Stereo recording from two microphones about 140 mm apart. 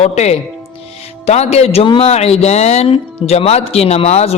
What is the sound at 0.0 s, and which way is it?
A man's voice, 50° left (ahead or behind).